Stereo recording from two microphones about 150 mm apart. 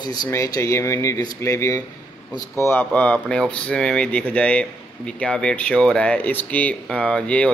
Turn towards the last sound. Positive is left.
turn(degrees=5)  # may be behind; listen again after turning